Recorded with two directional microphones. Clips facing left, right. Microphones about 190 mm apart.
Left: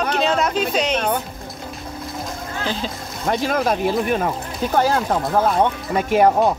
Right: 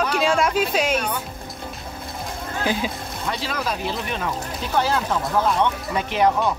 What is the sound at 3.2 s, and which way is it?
Speech, 50° left (ahead or behind).